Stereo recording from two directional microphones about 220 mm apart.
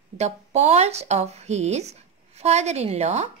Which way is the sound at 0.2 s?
30° right (ahead or behind).